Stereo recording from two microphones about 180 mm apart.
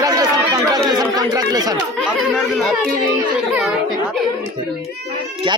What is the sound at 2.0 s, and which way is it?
Speech, centre (ahead or behind).